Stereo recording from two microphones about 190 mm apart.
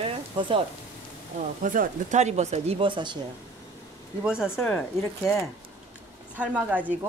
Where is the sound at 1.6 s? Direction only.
45° right (ahead or behind); by 3.2 s 25° right (ahead or behind).